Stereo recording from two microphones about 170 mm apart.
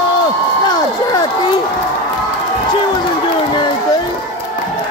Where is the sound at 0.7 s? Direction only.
25° left (ahead or behind).